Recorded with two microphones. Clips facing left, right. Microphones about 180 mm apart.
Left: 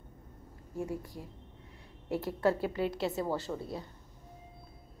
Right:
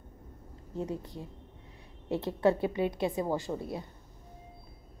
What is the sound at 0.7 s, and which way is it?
A woman's voice, 20° right (ahead or behind).